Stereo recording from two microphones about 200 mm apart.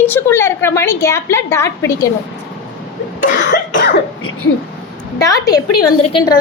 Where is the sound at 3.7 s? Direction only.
55° left (ahead or behind).